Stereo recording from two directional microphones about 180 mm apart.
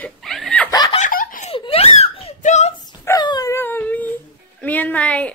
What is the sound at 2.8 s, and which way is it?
Dog, 20° left (ahead or behind).